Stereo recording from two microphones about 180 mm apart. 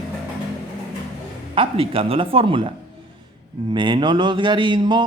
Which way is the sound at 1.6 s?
30° right (ahead or behind).